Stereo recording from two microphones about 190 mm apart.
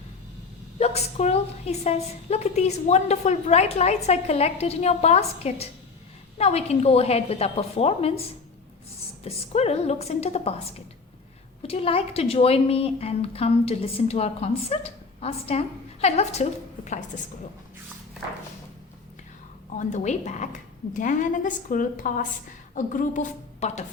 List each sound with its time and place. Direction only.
0.8 s a woman's voice: 35° left (ahead or behind)
9.2 s a woman's voice: 35° left (ahead or behind)
19.7 s a woman's voice: 40° left (ahead or behind)